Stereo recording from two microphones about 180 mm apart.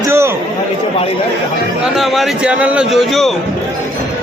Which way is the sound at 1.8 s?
Centre (ahead or behind).